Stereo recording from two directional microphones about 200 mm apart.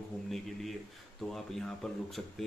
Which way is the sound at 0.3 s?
Centre (ahead or behind).